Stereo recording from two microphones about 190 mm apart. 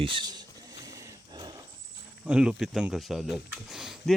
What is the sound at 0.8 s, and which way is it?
Wild animals, 20° right (ahead or behind).